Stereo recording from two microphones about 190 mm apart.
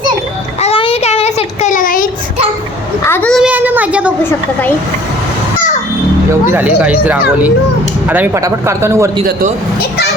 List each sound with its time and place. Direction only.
0.6 s child singing: 30° left (ahead or behind); by 2.0 s 45° left (ahead or behind)
3.1 s a child's voice: 5° left (ahead or behind)
6.5 s speech: 10° right (ahead or behind)